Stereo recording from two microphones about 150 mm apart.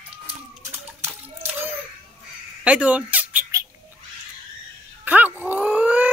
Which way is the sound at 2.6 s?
10° right (ahead or behind).